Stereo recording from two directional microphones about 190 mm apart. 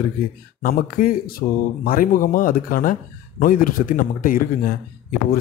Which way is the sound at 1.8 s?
50° left (ahead or behind).